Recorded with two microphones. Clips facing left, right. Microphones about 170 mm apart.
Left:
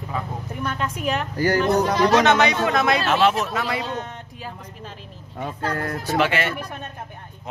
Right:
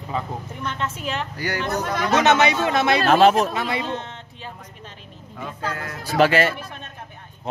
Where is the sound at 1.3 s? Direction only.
40° left (ahead or behind).